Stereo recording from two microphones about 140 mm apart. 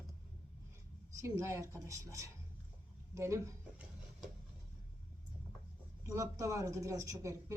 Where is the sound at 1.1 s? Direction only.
20° right (ahead or behind).